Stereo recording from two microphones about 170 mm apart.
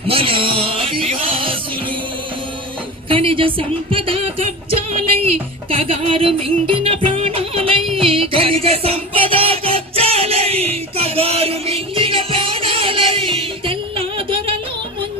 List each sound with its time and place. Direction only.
0.1 s music: 35° right (ahead or behind)
3.1 s music: 30° right (ahead or behind)